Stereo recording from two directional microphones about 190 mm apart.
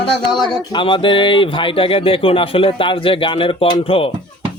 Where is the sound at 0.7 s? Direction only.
25° left (ahead or behind).